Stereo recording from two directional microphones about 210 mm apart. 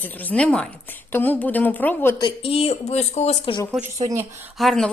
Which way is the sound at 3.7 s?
15° right (ahead or behind).